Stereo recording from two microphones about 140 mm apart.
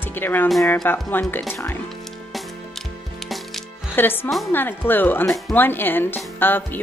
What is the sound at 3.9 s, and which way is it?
Speech, 15° left (ahead or behind).